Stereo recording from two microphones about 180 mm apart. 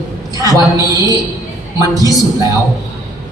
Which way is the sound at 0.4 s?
20° right (ahead or behind).